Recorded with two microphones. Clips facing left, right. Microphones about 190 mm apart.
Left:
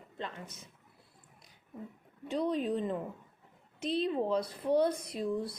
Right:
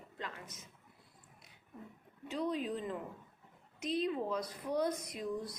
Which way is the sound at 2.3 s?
35° left (ahead or behind).